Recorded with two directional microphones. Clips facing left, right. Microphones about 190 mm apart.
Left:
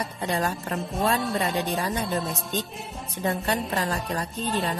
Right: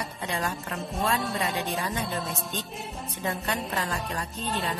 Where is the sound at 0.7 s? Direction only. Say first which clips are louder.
Left 3 dB; centre (ahead or behind).